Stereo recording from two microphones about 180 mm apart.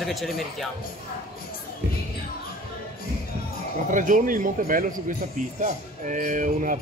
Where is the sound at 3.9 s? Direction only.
45° right (ahead or behind).